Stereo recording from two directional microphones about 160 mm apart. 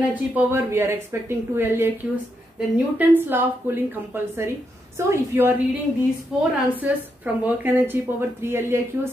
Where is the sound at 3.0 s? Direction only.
10° right (ahead or behind).